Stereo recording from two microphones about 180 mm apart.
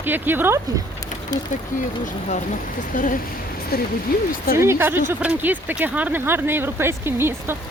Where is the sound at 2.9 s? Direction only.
45° left (ahead or behind).